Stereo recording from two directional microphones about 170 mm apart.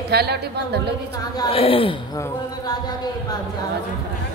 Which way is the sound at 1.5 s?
35° left (ahead or behind).